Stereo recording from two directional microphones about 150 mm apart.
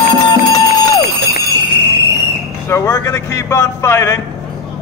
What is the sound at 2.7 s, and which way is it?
A man's voice, 20° left (ahead or behind).